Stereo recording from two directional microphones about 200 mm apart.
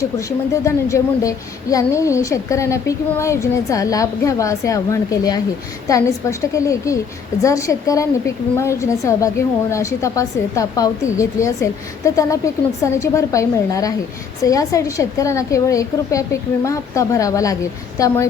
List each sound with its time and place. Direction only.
0.0 s a woman's voice: 15° left (ahead or behind)